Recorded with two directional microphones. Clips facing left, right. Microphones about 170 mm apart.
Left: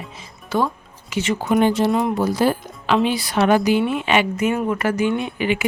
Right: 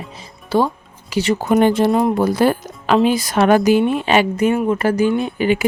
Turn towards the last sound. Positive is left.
turn(degrees=-40)  # may be behind; listen again after turning